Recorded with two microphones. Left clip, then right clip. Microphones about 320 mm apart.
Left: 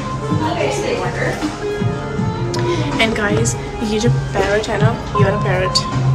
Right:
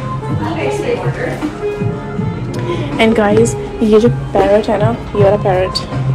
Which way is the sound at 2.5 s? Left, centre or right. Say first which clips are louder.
Even; centre.